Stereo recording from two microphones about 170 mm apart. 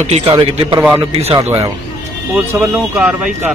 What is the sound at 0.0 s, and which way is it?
Speech, 35° right (ahead or behind).